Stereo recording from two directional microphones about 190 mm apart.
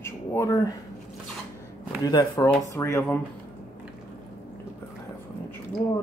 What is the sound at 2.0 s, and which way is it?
Speech, 20° left (ahead or behind).